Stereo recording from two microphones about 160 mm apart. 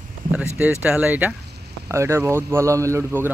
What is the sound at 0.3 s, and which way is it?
Speech, 10° right (ahead or behind).